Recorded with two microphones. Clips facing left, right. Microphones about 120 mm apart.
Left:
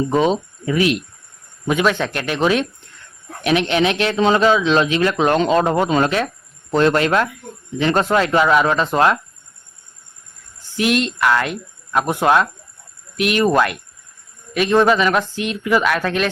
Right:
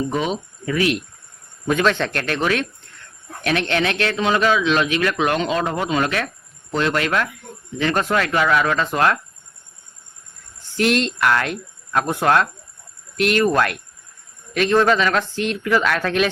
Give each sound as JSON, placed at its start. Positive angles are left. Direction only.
{"t": 0.1, "sound": "speech", "side_deg": 30}
{"t": 0.6, "sound": "speech", "side_deg": 20}
{"t": 1.6, "sound": "speech", "side_deg": 10}
{"t": 2.4, "sound": "a man's voice", "side_deg": 20}
{"t": 6.7, "sound": "a man's voice", "side_deg": 40}
{"t": 10.8, "sound": "speech", "side_deg": 5}
{"t": 14.5, "sound": "speech", "side_deg": 10}